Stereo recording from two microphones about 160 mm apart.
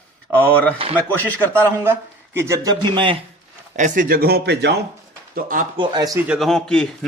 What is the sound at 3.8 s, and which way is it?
Speech, 55° right (ahead or behind).